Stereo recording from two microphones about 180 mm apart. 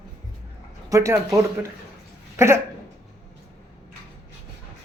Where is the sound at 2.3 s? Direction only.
15° right (ahead or behind).